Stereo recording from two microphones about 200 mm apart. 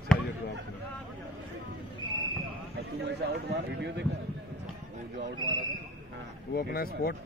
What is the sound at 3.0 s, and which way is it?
Speech, 60° right (ahead or behind).